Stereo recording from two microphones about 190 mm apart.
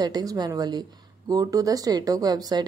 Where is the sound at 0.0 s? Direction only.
20° right (ahead or behind).